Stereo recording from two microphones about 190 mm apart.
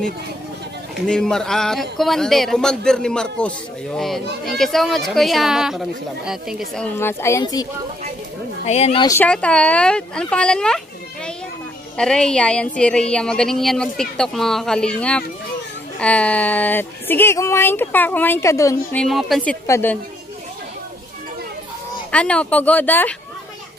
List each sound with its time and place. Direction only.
1.0 s a woman's voice: 5° left (ahead or behind)
7.0 s a woman's voice: 15° left (ahead or behind)
8.6 s speech: 35° left (ahead or behind)
9.0 s a woman's voice: 15° left (ahead or behind)
12.0 s a woman's voice: 5° left (ahead or behind)
19.0 s a woman's voice: centre (ahead or behind)
19.6 s a woman's voice: 10° left (ahead or behind)
22.1 s a woman's voice: 5° left (ahead or behind)